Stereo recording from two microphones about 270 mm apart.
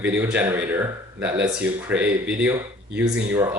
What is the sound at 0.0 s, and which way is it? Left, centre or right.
Speech, centre.